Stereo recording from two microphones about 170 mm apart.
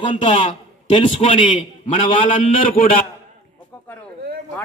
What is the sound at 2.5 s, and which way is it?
Speech, 55° left (ahead or behind).